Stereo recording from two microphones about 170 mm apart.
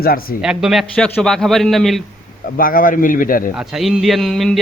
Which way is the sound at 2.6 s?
55° left (ahead or behind).